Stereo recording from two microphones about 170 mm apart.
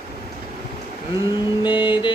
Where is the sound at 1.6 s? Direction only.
30° left (ahead or behind).